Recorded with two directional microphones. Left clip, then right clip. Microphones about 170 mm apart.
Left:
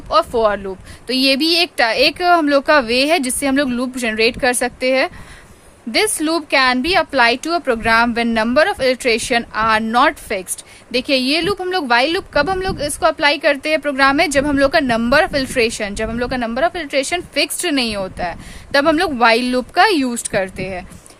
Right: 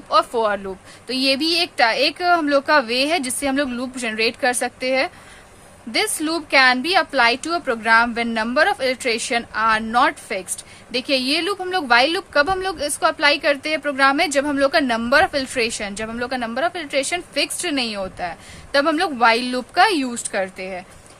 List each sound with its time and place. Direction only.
0.1 s a woman's voice: 30° left (ahead or behind)